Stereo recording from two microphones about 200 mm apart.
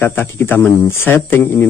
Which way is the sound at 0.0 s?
10° left (ahead or behind).